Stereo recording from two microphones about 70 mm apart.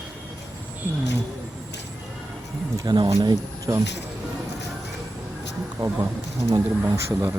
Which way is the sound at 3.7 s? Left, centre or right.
Right.